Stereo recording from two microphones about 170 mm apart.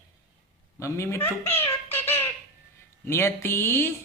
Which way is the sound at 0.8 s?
15° left (ahead or behind).